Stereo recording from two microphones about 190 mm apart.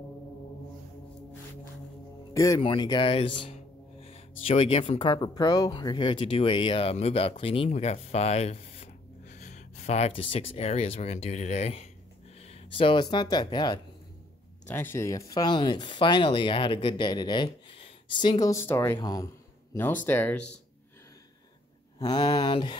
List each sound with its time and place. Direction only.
2.3 s speech: 15° left (ahead or behind)
14.7 s speech: 10° left (ahead or behind)
21.9 s speech: 20° left (ahead or behind)